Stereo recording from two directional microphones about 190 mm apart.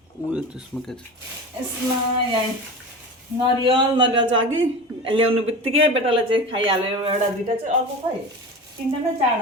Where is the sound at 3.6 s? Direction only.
25° right (ahead or behind).